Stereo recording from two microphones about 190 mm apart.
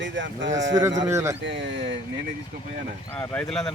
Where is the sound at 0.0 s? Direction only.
70° right (ahead or behind).